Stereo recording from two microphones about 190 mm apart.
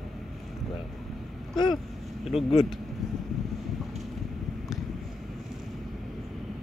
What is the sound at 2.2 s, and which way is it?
Speech, centre (ahead or behind).